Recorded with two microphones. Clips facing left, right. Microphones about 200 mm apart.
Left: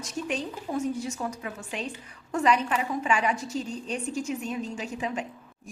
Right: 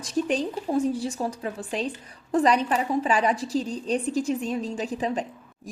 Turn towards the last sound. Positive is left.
turn(degrees=-35)  # may be behind; listen again after turning